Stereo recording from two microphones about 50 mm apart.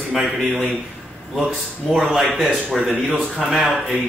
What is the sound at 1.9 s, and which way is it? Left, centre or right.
A man's voice, centre.